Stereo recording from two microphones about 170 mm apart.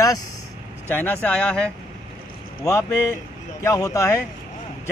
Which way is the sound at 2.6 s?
20° left (ahead or behind).